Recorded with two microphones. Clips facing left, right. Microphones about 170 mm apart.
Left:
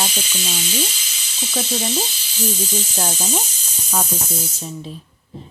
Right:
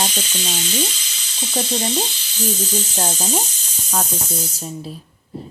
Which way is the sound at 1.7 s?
5° left (ahead or behind).